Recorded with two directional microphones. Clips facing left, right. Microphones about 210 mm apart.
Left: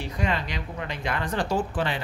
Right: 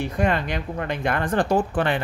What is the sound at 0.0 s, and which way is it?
Speech, 55° right (ahead or behind).